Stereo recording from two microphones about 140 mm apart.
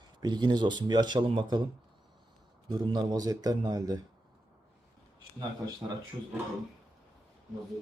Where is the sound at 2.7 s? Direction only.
30° right (ahead or behind).